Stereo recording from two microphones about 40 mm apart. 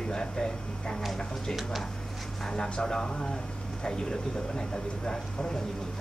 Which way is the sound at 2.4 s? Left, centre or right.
Left.